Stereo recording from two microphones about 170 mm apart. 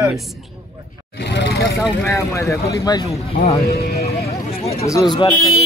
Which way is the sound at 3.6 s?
65° left (ahead or behind).